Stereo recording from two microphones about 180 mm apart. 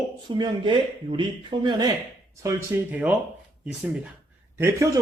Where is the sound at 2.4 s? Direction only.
10° right (ahead or behind).